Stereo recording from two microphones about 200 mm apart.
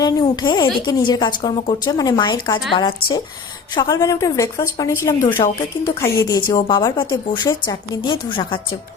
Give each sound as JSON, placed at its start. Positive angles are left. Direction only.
{"t": 0.0, "sound": "a woman's voice", "side_deg": 20}